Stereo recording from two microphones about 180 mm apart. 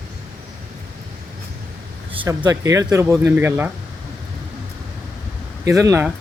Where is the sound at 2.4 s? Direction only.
20° right (ahead or behind).